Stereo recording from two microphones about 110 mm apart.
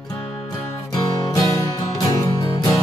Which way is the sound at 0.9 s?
35° left (ahead or behind).